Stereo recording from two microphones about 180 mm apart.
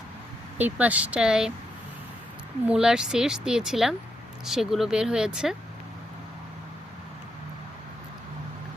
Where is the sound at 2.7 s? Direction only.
5° right (ahead or behind).